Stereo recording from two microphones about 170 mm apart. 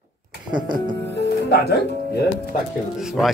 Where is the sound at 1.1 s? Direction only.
80° left.